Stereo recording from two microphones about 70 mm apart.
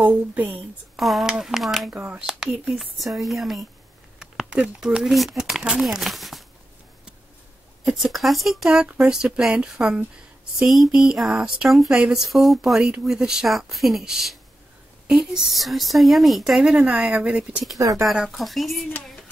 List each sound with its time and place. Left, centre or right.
0.0 s speech: right
0.5 s speech: centre
4.2 s speech: centre
7.8 s speech: centre
16.8 s speech: centre
17.7 s speech: right
18.0 s speech: centre